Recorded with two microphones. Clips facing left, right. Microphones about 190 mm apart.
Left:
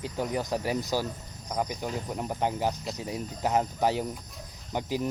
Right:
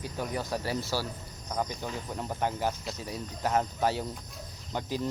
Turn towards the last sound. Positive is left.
turn(degrees=15)  # may be behind; listen again after turning